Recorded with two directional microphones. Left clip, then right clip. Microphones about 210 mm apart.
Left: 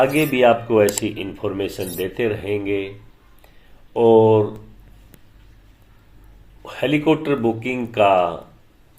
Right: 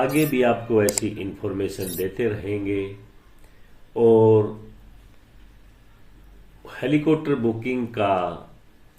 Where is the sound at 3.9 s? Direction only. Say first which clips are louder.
Left 3 dB; centre (ahead or behind).